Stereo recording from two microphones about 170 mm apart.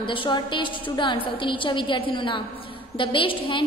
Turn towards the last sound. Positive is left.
turn(degrees=30)  # may be behind; listen again after turning